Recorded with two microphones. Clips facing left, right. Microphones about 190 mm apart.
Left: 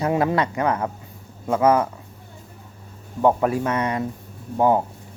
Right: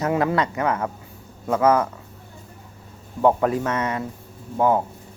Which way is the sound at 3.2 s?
15° left (ahead or behind).